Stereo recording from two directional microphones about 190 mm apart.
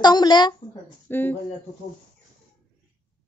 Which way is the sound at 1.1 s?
10° left (ahead or behind).